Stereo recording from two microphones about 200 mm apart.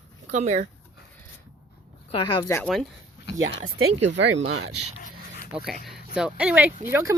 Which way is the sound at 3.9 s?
35° right (ahead or behind).